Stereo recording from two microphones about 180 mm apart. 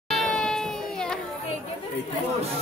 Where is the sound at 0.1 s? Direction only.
Centre (ahead or behind).